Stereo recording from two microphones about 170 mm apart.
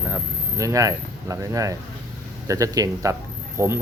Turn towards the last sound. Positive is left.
turn(degrees=-15)  # may be behind; listen again after turning